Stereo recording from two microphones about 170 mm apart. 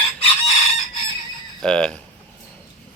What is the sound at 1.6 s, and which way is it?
Speech, 5° left (ahead or behind).